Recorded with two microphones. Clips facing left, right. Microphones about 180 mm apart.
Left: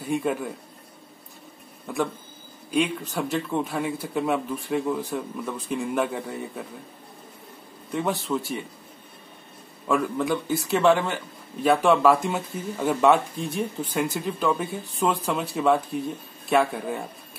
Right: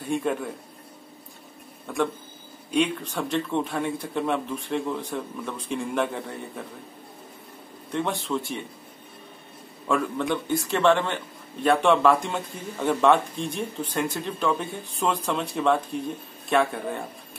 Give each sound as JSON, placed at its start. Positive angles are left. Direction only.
{"t": 0.1, "sound": "speech", "side_deg": 5}
{"t": 1.9, "sound": "speech", "side_deg": 5}
{"t": 7.9, "sound": "speech", "side_deg": 5}
{"t": 9.8, "sound": "speech", "side_deg": 0}